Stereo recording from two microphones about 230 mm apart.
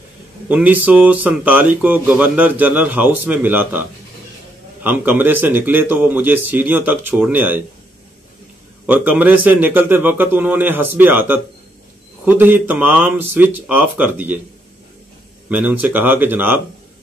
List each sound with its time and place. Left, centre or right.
0.5 s speech: centre
4.8 s speech: centre
8.8 s speech: centre
15.5 s speech: centre